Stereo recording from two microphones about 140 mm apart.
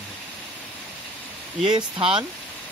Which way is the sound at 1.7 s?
35° right (ahead or behind).